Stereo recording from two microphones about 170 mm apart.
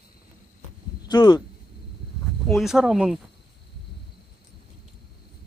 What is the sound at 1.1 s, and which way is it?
Speech, 25° left (ahead or behind).